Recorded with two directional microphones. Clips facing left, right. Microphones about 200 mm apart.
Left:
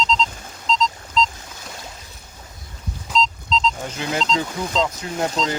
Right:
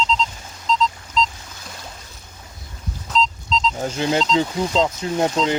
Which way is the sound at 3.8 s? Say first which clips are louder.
Right 5 dB; 30° right (ahead or behind).